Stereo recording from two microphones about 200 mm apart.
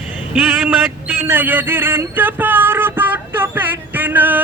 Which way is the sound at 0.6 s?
10° right (ahead or behind).